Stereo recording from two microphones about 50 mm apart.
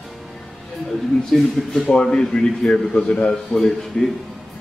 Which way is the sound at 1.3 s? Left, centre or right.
Centre.